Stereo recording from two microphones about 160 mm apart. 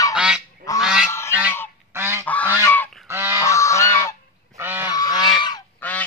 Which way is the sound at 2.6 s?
10° left (ahead or behind).